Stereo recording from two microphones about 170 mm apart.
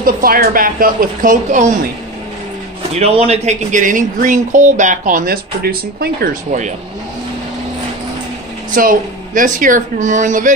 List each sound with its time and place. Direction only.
0.0 s a woman's voice: 60° right (ahead or behind)
3.0 s speech: 40° right (ahead or behind); by 6.3 s 65° right (ahead or behind)
8.7 s speech: 50° right (ahead or behind)